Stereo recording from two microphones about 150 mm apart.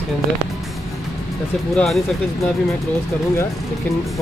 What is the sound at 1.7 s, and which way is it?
Speech, centre (ahead or behind).